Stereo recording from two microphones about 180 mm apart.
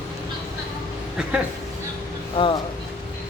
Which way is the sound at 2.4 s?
25° left (ahead or behind).